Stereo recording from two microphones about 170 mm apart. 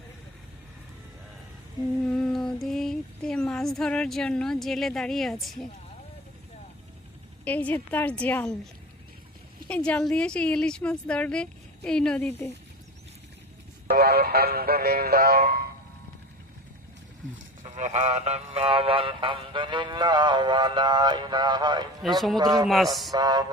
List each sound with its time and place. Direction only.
2.0 s female singing: 5° left (ahead or behind)
7.4 s a woman's voice: 10° left (ahead or behind)
9.6 s a woman's voice: 5° left (ahead or behind)
13.9 s music: 65° right (ahead or behind)
17.7 s a sound: 45° right (ahead or behind); by 22.6 s 25° right (ahead or behind)
22.6 s a woman's voice: centre (ahead or behind)
23.1 s a sound: 25° right (ahead or behind)